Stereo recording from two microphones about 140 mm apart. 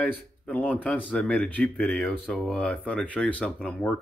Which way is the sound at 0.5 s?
10° left (ahead or behind).